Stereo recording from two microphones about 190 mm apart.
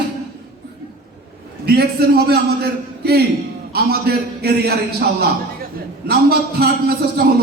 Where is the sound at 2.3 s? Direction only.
60° right (ahead or behind).